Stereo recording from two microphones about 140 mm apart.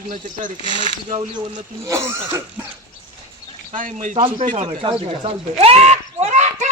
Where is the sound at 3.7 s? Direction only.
70° right (ahead or behind).